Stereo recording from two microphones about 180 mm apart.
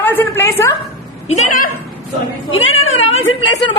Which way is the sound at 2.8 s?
90° left.